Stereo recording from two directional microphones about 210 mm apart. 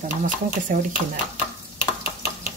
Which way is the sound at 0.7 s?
40° right (ahead or behind).